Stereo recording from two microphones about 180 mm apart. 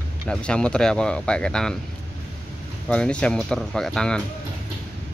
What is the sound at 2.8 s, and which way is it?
Speech, 5° left (ahead or behind).